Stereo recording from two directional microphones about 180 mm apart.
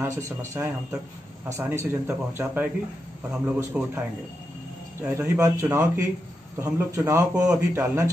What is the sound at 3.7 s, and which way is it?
Speech, 5° right (ahead or behind).